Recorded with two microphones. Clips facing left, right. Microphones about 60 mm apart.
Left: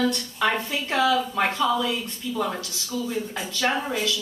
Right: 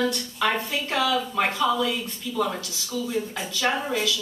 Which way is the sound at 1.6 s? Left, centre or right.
Centre.